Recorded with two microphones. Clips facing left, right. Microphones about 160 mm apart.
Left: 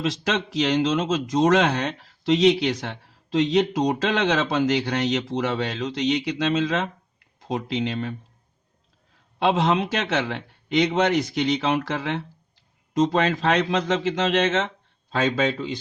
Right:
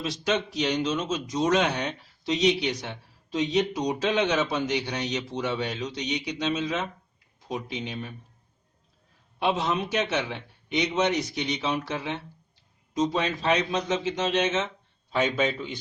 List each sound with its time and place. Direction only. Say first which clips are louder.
0.0 s speech: left 2 dB; 90° left
9.4 s speech: left 5 dB; 90° left